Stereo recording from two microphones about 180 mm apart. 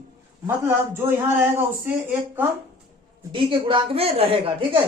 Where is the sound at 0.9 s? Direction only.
10° right (ahead or behind).